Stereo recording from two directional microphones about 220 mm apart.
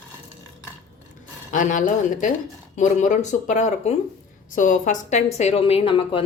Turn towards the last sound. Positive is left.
turn(degrees=25)  # may be behind; listen again after turning